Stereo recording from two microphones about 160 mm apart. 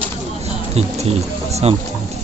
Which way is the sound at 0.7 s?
40° right (ahead or behind).